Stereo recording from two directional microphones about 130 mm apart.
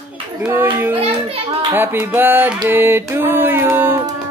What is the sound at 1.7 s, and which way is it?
Speech, 15° right (ahead or behind).